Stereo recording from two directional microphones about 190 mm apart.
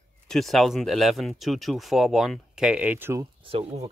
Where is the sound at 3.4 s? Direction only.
30° right (ahead or behind).